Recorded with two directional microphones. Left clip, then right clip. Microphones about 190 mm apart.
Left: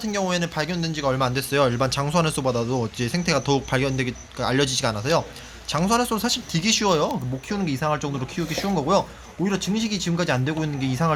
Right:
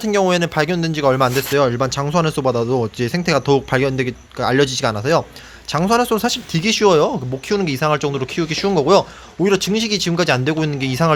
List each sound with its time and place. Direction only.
0.0 s speech: 55° right (ahead or behind)